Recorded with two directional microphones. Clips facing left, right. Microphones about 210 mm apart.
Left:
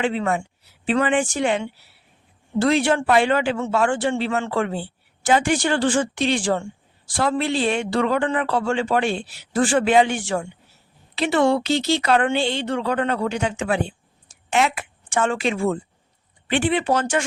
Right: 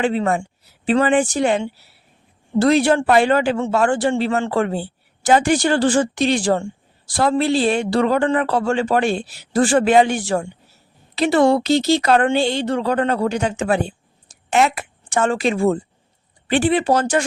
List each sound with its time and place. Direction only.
0.0 s speech: 40° right (ahead or behind)